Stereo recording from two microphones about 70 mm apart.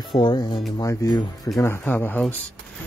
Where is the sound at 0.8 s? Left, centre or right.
Left.